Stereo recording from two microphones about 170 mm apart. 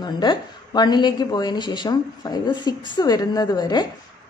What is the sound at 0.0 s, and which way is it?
A woman's voice, 25° left (ahead or behind).